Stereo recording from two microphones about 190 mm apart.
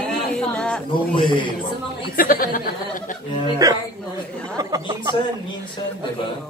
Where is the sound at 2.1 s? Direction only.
50° left (ahead or behind).